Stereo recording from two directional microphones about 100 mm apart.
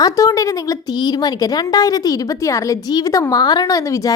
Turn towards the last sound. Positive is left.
turn(degrees=35)  # may be behind; listen again after turning